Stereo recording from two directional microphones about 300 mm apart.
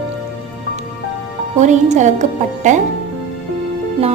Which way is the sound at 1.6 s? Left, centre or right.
Right.